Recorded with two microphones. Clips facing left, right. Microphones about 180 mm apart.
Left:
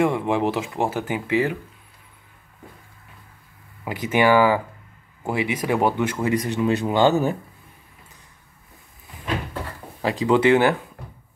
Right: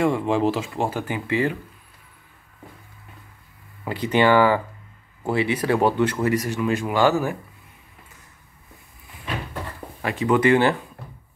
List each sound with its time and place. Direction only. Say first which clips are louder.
0.0 s speech: even; 20° left (ahead or behind)
3.8 s speech: even; 10° left (ahead or behind)
10.1 s speech: left 1 dB; 25° left (ahead or behind)
10.4 s speech: even; 10° left (ahead or behind)